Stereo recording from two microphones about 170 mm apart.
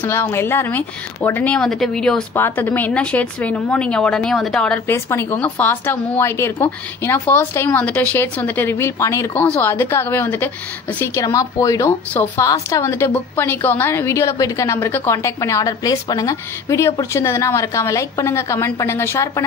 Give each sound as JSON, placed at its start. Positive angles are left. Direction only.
{"t": 0.0, "sound": "speech", "side_deg": 15}